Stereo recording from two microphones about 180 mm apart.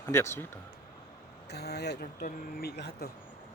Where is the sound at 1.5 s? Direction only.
65° left (ahead or behind).